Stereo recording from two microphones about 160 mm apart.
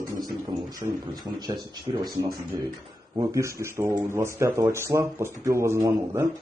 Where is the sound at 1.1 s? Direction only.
25° right (ahead or behind).